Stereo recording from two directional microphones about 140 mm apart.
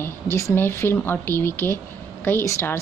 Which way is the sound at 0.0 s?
20° left (ahead or behind).